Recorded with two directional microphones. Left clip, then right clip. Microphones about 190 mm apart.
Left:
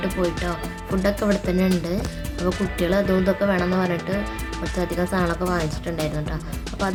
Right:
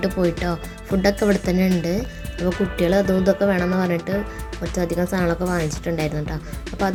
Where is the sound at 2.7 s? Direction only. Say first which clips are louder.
Right 2 dB; 20° right (ahead or behind).